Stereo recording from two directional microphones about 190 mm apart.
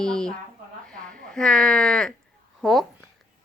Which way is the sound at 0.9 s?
5° left (ahead or behind).